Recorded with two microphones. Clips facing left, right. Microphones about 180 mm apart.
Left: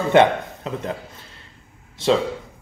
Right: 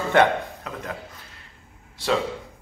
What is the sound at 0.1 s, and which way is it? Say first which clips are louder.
Speech: left 4 dB; 20° left (ahead or behind).